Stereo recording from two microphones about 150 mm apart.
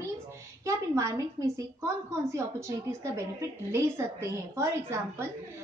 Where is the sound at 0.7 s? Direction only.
20° right (ahead or behind).